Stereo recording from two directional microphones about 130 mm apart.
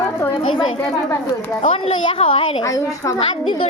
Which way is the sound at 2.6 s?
25° left (ahead or behind).